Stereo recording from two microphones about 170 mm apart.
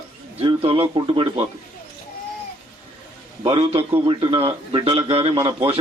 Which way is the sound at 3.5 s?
35° right (ahead or behind).